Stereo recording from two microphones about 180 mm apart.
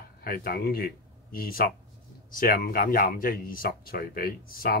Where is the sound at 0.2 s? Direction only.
55° left (ahead or behind).